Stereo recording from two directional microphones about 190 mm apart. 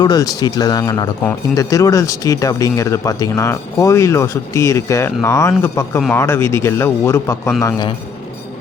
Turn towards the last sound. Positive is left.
turn(degrees=20)  # may be behind; listen again after turning